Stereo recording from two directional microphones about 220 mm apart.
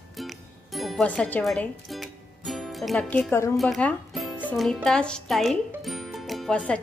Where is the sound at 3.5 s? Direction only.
Centre (ahead or behind).